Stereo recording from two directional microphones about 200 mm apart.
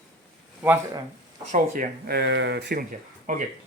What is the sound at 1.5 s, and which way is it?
Speech, 45° right (ahead or behind).